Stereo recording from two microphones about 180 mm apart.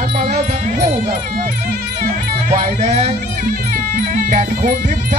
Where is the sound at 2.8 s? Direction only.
40° right (ahead or behind).